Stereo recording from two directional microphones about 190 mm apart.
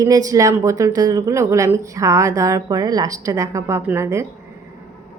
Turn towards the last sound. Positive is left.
turn(degrees=-15)  # may be behind; listen again after turning